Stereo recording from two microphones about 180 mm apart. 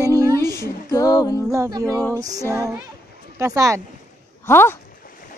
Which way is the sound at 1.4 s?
20° right (ahead or behind).